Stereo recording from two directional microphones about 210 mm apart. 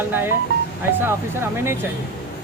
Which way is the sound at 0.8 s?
10° right (ahead or behind).